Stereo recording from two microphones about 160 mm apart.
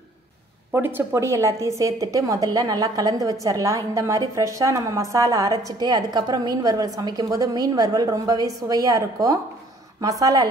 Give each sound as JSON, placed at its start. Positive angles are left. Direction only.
{"t": 0.7, "sound": "a woman's voice", "side_deg": -15}